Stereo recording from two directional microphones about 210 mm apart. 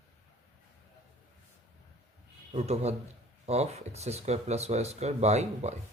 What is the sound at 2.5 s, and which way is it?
Speech, 30° right (ahead or behind).